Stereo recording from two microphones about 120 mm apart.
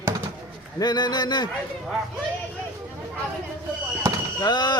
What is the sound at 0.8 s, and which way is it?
Speech, 35° left (ahead or behind).